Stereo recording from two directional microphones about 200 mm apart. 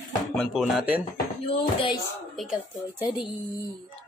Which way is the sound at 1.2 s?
25° left (ahead or behind).